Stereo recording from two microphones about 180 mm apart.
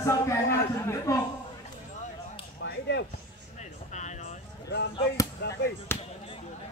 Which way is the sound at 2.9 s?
70° left (ahead or behind).